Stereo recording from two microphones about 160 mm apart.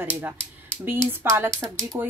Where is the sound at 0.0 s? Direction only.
10° right (ahead or behind).